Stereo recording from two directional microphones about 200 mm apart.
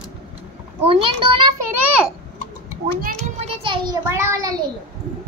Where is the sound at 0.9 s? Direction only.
25° right (ahead or behind).